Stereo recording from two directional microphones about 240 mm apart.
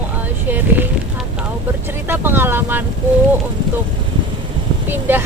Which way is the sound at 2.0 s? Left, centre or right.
Centre.